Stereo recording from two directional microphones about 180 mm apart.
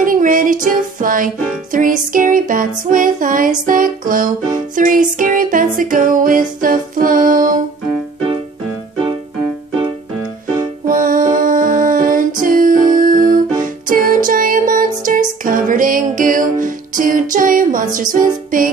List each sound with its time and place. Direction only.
0.0 s music: 50° right (ahead or behind)
10.9 s music: 50° right (ahead or behind)